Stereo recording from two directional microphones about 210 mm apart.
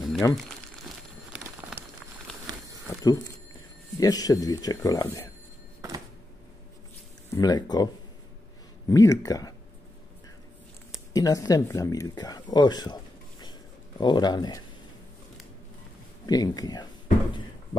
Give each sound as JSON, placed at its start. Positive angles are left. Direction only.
{"t": 0.2, "sound": "speech", "side_deg": 15}
{"t": 0.8, "sound": "a sound", "side_deg": -5}
{"t": 2.9, "sound": "a sound", "side_deg": 15}
{"t": 4.0, "sound": "speech", "side_deg": 15}
{"t": 7.3, "sound": "speech", "side_deg": 20}
{"t": 11.1, "sound": "speech", "side_deg": 15}
{"t": 16.3, "sound": "speech", "side_deg": 20}